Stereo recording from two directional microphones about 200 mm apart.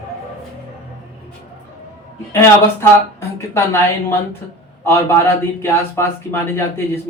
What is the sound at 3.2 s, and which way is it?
Speech, 10° left (ahead or behind).